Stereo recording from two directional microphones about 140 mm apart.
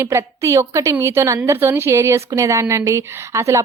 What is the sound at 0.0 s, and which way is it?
A woman's voice, 20° right (ahead or behind).